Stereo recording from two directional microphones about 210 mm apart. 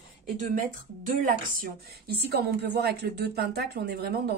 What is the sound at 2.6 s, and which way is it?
A woman's voice, 50° right (ahead or behind).